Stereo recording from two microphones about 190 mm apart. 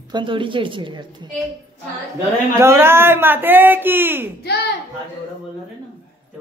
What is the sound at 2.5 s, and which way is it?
Speech, 10° right (ahead or behind).